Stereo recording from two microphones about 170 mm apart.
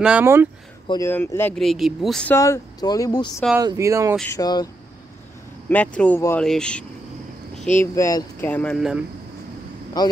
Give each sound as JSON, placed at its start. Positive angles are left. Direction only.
{"t": 0.0, "sound": "speech", "side_deg": -10}
{"t": 0.8, "sound": "a man's voice", "side_deg": 20}
{"t": 1.5, "sound": "speech", "side_deg": 0}
{"t": 2.3, "sound": "speech", "side_deg": 15}
{"t": 3.6, "sound": "speech", "side_deg": -20}
{"t": 4.3, "sound": "speech", "side_deg": 20}
{"t": 5.7, "sound": "a man's voice", "side_deg": 10}
{"t": 7.8, "sound": "a man's voice", "side_deg": 20}
{"t": 8.5, "sound": "speech", "side_deg": 10}